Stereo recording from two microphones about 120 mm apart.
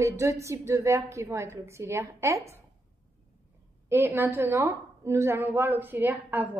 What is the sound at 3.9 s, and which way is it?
A woman's voice, 20° right (ahead or behind).